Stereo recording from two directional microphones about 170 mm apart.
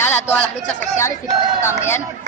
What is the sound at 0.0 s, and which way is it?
A man's voice, 10° left (ahead or behind).